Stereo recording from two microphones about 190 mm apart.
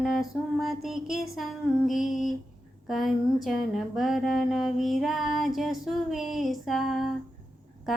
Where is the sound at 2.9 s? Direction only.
Centre (ahead or behind).